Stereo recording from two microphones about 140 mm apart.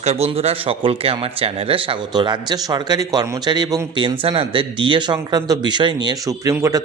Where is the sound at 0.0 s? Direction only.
50° right (ahead or behind).